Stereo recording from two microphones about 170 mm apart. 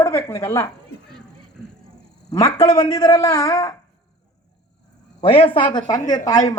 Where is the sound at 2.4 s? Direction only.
20° left (ahead or behind).